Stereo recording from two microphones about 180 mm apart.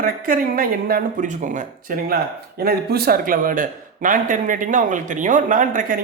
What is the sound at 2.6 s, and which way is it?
Speech, 60° right (ahead or behind).